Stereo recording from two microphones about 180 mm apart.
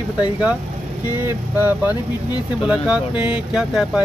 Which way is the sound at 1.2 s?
10° right (ahead or behind).